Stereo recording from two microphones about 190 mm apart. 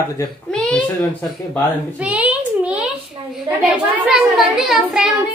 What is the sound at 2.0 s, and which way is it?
A child's voice, 5° right (ahead or behind).